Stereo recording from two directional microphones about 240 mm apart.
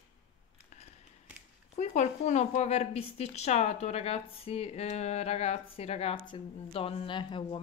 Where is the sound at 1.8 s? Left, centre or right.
Left.